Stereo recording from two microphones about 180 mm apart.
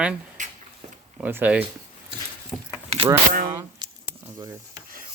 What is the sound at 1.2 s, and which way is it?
Speech, 10° right (ahead or behind).